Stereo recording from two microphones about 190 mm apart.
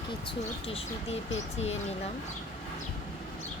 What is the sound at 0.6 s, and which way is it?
Speech, 30° left (ahead or behind).